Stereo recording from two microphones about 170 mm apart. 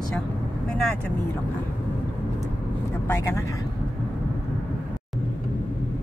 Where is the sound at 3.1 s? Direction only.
15° left (ahead or behind).